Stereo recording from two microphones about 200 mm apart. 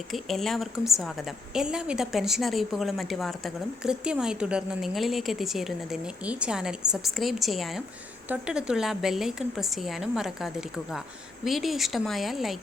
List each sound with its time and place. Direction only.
0.1 s a woman's voice: centre (ahead or behind)